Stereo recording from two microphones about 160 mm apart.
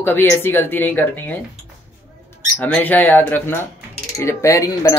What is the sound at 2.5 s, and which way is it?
Speech, 10° left (ahead or behind).